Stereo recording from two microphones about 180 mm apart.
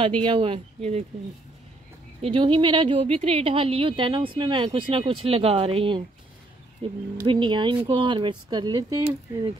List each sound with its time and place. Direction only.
0.2 s a woman's voice: 30° right (ahead or behind)
2.2 s a woman's voice: 25° right (ahead or behind)